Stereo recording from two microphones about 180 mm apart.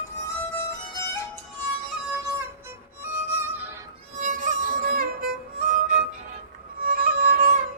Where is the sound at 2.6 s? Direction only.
15° right (ahead or behind).